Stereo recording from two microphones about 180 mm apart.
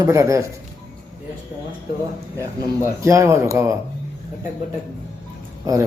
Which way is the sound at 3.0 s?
15° right (ahead or behind).